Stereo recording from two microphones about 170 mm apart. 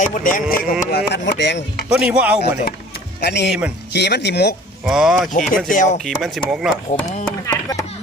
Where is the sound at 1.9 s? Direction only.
5° right (ahead or behind).